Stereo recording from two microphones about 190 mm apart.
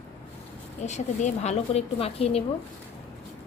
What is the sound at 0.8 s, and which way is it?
A woman's voice, 35° left (ahead or behind).